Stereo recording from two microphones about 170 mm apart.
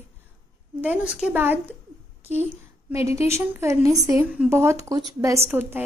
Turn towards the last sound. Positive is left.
turn(degrees=-15)  # may be behind; listen again after turning